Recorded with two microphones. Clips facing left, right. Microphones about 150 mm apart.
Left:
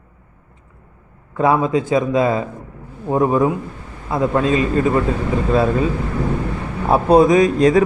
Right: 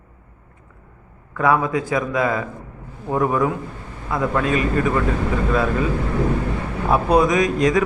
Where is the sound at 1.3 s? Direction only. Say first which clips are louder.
Left 3 dB; 25° left (ahead or behind).